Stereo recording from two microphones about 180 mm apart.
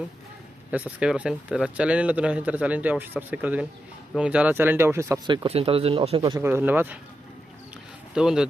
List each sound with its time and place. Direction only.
0.7 s speech: 5° right (ahead or behind); by 6.4 s 30° right (ahead or behind)
6.4 s speech: 10° right (ahead or behind)
8.1 s speech: 5° right (ahead or behind)